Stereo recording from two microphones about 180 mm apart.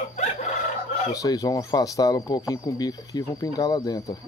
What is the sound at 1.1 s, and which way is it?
Speech, 20° left (ahead or behind).